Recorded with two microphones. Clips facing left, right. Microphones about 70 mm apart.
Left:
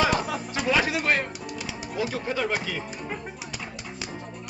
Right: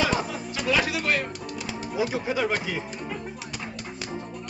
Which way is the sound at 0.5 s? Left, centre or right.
Left.